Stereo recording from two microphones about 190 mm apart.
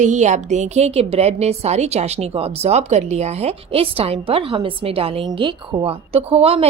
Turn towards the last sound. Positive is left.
turn(degrees=-30)  # may be behind; listen again after turning